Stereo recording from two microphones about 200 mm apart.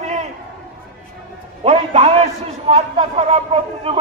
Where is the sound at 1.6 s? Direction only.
30° right (ahead or behind).